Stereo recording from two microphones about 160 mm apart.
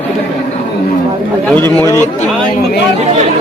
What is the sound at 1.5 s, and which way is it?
Speech, 15° left (ahead or behind).